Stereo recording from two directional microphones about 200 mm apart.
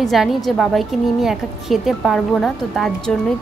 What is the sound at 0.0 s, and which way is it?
A woman's voice, centre (ahead or behind).